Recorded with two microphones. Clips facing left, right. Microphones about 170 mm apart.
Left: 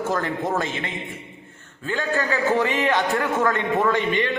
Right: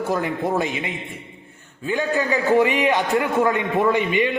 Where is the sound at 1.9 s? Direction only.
15° right (ahead or behind).